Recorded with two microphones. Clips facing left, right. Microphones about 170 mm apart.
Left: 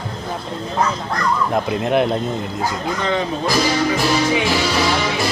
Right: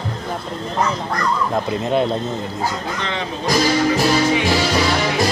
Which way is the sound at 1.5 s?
15° left (ahead or behind).